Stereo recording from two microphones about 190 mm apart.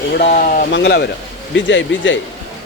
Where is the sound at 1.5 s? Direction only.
75° left (ahead or behind).